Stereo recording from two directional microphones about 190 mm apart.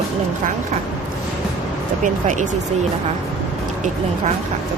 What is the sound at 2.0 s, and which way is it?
Speech, 40° right (ahead or behind).